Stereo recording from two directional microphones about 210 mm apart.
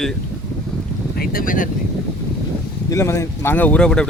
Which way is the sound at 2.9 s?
15° left (ahead or behind).